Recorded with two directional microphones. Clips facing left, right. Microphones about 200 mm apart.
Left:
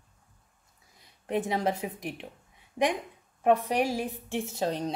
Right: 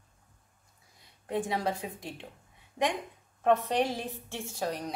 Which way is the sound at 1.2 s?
20° left (ahead or behind).